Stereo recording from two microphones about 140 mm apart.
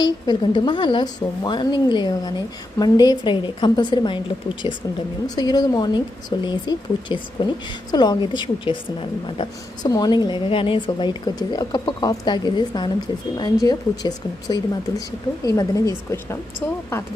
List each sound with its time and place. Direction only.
0.0 s a woman's voice: 30° left (ahead or behind)